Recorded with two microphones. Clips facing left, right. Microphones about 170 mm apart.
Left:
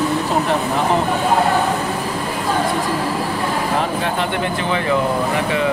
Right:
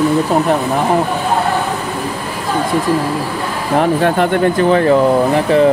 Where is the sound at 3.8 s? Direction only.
55° right (ahead or behind).